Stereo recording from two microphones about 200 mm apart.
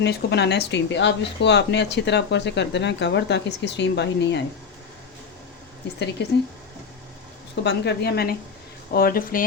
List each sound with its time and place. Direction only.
0.0 s speech: 55° left (ahead or behind)
6.2 s speech: 60° left (ahead or behind)
7.6 s a woman's voice: 55° left (ahead or behind)